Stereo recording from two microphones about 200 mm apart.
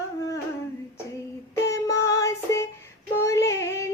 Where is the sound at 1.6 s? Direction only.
15° left (ahead or behind).